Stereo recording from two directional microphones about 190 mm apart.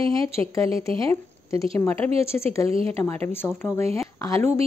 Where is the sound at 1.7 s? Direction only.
15° left (ahead or behind).